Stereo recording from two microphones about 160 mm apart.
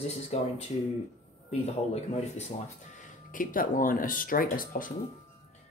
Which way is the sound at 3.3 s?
55° left (ahead or behind).